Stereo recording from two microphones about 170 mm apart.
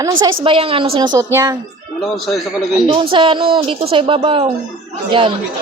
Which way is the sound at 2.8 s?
30° right (ahead or behind).